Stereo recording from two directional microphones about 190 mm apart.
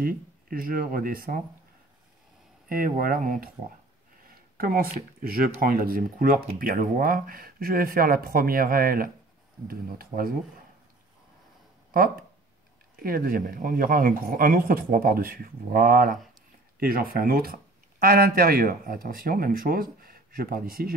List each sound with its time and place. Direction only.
0.0 s speech: 50° right (ahead or behind)
2.7 s speech: 50° right (ahead or behind)
13.0 s speech: 50° right (ahead or behind)